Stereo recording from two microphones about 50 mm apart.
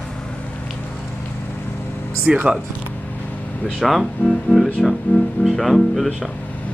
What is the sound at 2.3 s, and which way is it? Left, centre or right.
Speech, centre.